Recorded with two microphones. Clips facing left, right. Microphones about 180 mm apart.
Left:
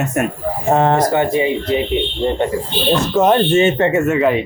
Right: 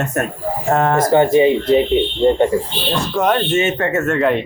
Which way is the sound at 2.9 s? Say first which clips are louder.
Left 3 dB; 20° left (ahead or behind).